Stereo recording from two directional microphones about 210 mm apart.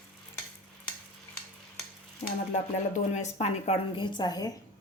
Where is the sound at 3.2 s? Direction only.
30° left (ahead or behind).